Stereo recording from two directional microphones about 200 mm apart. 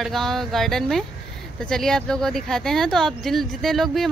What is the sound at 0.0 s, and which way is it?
Speech, centre (ahead or behind).